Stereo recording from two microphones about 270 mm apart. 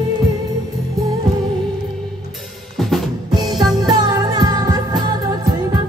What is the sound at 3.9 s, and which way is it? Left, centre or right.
Music, centre.